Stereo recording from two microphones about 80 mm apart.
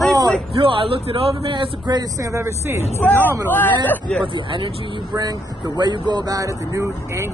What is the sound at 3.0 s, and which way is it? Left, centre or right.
Speech, left.